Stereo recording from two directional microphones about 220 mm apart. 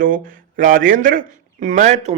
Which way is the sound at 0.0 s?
40° right (ahead or behind).